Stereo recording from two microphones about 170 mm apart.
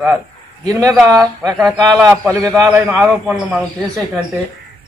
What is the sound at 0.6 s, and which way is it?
Speech, 20° right (ahead or behind).